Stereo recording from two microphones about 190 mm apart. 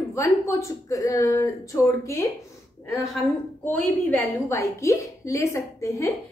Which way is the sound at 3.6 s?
15° left (ahead or behind).